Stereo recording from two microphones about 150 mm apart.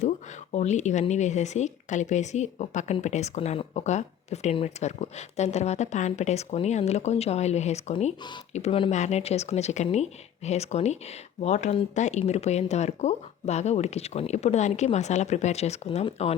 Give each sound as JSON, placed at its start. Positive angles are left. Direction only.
{"t": 0.5, "sound": "speech", "side_deg": 50}